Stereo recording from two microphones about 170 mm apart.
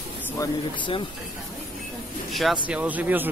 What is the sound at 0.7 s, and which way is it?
Speech, 30° left (ahead or behind).